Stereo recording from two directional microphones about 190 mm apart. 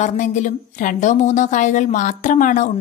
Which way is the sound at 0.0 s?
40° left (ahead or behind).